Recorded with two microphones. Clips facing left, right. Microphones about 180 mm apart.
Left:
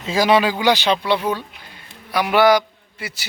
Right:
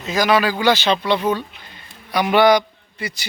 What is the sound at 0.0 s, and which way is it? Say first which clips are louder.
A man's voice: left 1 dB; 25° left (ahead or behind).